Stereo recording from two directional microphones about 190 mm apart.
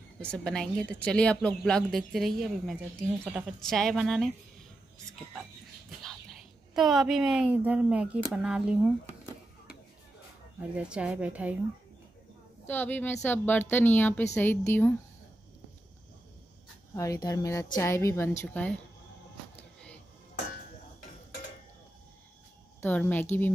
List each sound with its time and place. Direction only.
0.2 s speech: 5° left (ahead or behind)
6.7 s speech: centre (ahead or behind)
10.6 s a woman's voice: 5° right (ahead or behind)
12.6 s a woman's voice: 10° left (ahead or behind)
16.9 s a woman's voice: 15° left (ahead or behind)
19.5 s vehicle: 5° left (ahead or behind)
22.8 s a woman's voice: 10° left (ahead or behind)